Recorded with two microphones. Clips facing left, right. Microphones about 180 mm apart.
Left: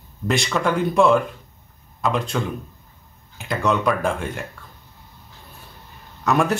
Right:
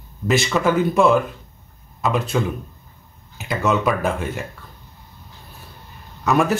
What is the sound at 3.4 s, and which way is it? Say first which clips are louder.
Speech: right 1 dB; 5° right (ahead or behind).